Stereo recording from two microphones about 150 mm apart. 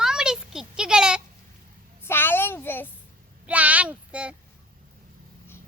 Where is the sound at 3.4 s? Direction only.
10° right (ahead or behind).